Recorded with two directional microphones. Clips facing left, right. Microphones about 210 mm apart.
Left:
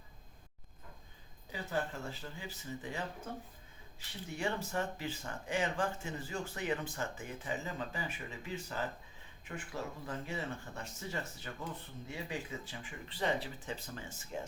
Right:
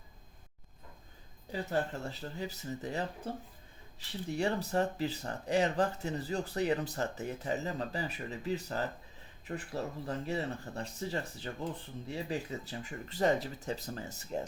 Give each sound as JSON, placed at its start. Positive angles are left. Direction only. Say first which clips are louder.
{"t": 1.5, "sound": "speech", "louder": "right 4 dB", "side_deg": -40}
{"t": 4.4, "sound": "speech", "louder": "right 5 dB", "side_deg": -35}